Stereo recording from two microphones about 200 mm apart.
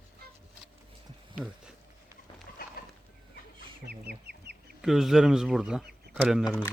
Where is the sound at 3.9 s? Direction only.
55° right (ahead or behind).